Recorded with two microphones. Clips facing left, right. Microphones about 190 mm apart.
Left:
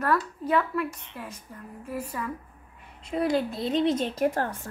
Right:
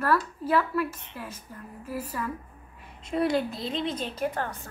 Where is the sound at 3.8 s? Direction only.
65° left (ahead or behind).